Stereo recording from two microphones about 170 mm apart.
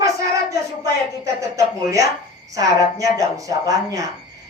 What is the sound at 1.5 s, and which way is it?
A woman's voice, 20° right (ahead or behind).